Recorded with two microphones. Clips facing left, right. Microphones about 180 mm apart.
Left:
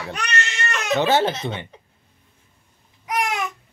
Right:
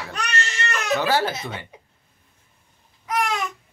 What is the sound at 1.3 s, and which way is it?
Speech, 10° right (ahead or behind).